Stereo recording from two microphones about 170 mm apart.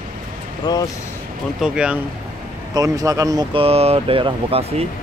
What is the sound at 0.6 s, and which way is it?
Speech, 20° left (ahead or behind).